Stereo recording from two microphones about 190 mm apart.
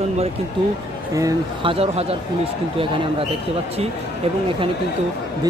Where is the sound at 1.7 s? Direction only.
30° right (ahead or behind).